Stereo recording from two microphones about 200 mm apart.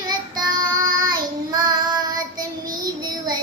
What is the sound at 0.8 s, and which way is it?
Child singing, 20° right (ahead or behind).